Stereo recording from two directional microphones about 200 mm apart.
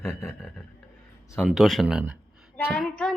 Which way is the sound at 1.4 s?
Centre (ahead or behind).